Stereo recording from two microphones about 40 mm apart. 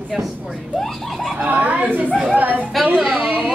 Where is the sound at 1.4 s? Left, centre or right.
Right.